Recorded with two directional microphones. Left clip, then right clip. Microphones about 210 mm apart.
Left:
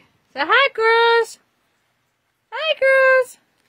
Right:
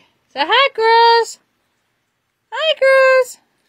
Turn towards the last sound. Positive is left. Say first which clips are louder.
# right 3 dB
turn(degrees=-15)  # may be behind; listen again after turning